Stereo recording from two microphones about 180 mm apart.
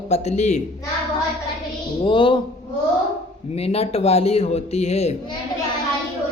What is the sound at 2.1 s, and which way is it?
Speech, 25° left (ahead or behind).